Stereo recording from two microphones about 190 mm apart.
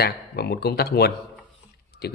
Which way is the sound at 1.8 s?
60° left (ahead or behind).